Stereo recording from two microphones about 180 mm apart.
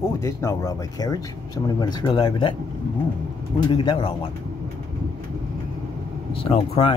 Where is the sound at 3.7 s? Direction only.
25° left (ahead or behind).